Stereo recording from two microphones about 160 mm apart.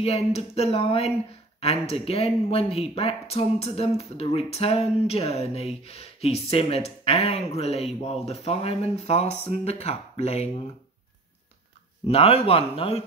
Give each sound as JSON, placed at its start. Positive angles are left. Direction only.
{"t": 0.0, "sound": "speech", "side_deg": 40}
{"t": 12.1, "sound": "speech", "side_deg": 40}